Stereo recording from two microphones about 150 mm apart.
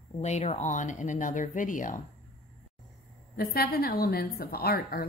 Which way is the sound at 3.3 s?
90° left.